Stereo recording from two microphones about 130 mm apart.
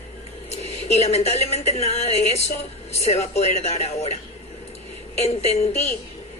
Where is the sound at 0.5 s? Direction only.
55° left (ahead or behind).